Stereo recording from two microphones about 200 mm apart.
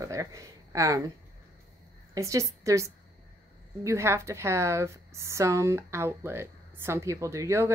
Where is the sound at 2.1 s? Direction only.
15° right (ahead or behind).